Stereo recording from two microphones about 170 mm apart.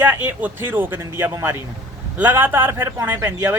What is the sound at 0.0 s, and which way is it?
Speech, 10° right (ahead or behind).